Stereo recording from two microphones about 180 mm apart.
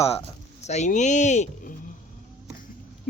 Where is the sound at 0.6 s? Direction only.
40° left (ahead or behind).